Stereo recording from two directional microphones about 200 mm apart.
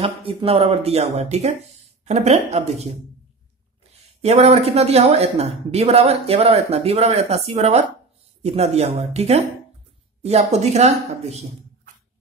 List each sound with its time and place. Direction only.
0.0 s speech: 25° right (ahead or behind)
4.2 s speech: 30° right (ahead or behind)